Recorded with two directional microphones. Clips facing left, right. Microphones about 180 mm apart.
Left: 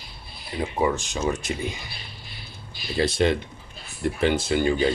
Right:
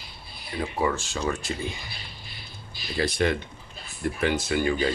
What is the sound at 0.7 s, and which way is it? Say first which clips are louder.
Speech: left 3 dB; 20° left (ahead or behind).